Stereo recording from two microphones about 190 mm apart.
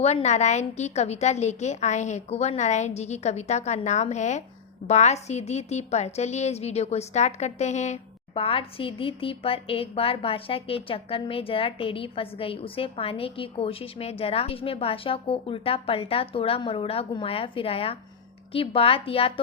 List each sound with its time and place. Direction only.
0.0 s a woman's voice: 35° left (ahead or behind)